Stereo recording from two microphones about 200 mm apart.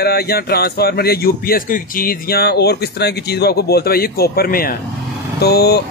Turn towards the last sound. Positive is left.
turn(degrees=50)  # may be behind; listen again after turning